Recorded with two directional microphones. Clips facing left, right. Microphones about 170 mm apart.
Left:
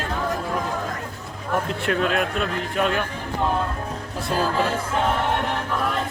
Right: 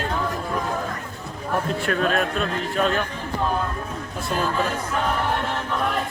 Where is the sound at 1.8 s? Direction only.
20° left (ahead or behind).